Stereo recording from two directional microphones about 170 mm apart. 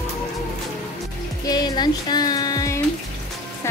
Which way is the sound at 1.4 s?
25° left (ahead or behind).